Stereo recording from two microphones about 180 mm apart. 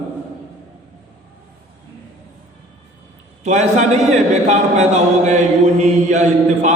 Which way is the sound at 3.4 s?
40° right (ahead or behind).